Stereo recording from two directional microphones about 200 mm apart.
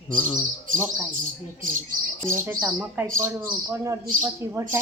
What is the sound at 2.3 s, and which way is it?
A man's voice, 10° right (ahead or behind).